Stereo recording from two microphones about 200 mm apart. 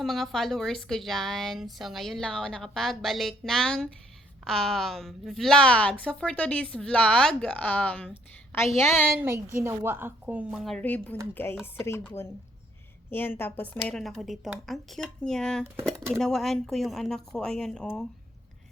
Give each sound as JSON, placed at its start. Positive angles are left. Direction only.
{"t": 0.0, "sound": "a woman's voice", "side_deg": 0}
{"t": 8.8, "sound": "chopping", "side_deg": 10}
{"t": 9.1, "sound": "a woman's voice", "side_deg": -10}
{"t": 11.6, "sound": "chopping", "side_deg": 10}
{"t": 13.1, "sound": "a woman's voice", "side_deg": 10}